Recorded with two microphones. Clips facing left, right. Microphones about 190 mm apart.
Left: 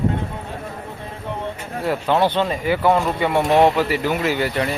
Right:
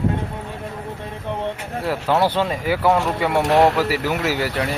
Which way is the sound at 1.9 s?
5° right (ahead or behind).